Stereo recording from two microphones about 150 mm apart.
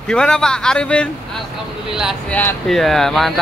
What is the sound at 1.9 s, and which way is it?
Speech, 5° right (ahead or behind).